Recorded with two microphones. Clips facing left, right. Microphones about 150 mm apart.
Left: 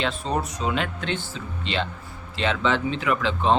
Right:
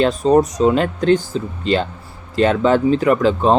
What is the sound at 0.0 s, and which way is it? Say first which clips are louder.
Speech: right 12 dB; 40° right (ahead or behind).